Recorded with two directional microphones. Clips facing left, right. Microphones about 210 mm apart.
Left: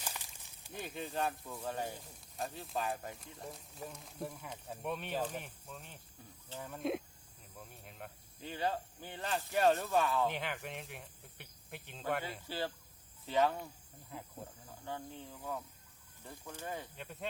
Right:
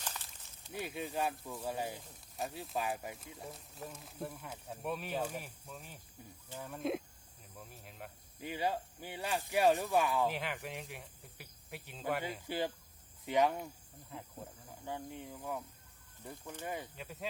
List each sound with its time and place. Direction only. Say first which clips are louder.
0.0 s a sound: even; 10° left (ahead or behind)
0.7 s speech: right 2 dB; 5° right (ahead or behind)
8.4 s speech: right 1 dB; 10° right (ahead or behind)
10.3 s speech: even; centre (ahead or behind)
12.5 s speech: right 3 dB; 15° right (ahead or behind)
14.1 s speech: even; centre (ahead or behind)
14.8 s speech: right 2 dB; 15° right (ahead or behind)